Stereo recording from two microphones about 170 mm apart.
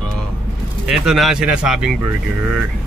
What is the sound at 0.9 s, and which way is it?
Speech, centre (ahead or behind).